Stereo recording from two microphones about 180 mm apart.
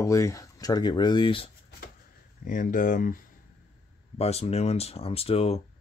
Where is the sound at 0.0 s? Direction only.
15° left (ahead or behind).